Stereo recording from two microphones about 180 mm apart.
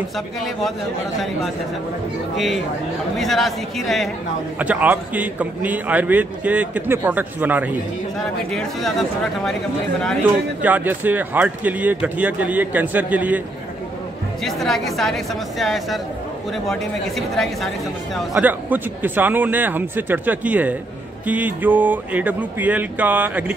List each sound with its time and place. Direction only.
0.4 s a man's voice: centre (ahead or behind)
8.5 s speech: 5° left (ahead or behind)
10.6 s a man's voice: 10° right (ahead or behind)
14.4 s a man's voice: centre (ahead or behind)